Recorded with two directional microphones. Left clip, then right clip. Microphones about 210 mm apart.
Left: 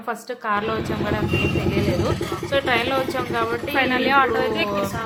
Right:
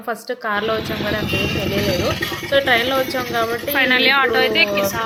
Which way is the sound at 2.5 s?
15° right (ahead or behind).